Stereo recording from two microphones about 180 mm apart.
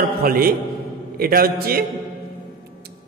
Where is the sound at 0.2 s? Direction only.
55° right (ahead or behind).